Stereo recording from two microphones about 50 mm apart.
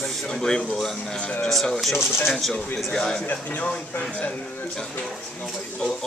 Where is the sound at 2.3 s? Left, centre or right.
Centre.